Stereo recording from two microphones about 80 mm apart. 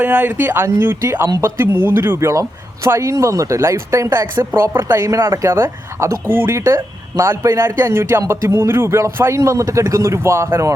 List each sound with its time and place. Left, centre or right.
0.0 s speech: right